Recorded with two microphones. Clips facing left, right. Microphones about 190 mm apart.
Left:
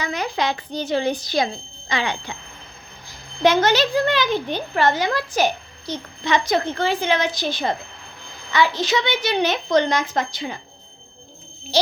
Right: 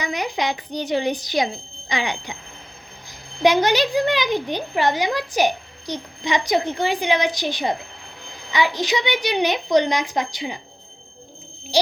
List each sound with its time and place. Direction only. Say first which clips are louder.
0.0 s speech: left 1 dB; 15° right (ahead or behind)
11.7 s speech: even; 15° right (ahead or behind)